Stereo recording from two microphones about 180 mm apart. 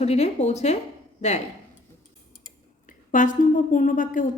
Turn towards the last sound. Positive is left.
turn(degrees=45)  # may be behind; listen again after turning